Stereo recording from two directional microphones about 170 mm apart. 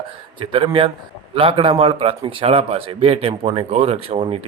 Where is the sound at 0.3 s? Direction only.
30° right (ahead or behind).